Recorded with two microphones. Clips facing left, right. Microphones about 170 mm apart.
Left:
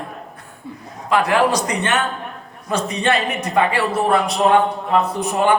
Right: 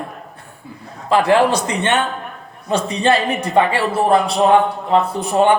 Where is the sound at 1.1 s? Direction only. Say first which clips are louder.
Right 3 dB; 30° right (ahead or behind).